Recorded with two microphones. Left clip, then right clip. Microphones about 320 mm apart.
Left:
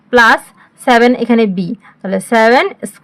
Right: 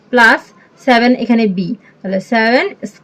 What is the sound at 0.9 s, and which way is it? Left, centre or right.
A woman's voice, left.